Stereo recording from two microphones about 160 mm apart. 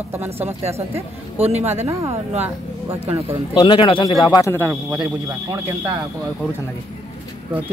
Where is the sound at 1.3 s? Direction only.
40° right (ahead or behind).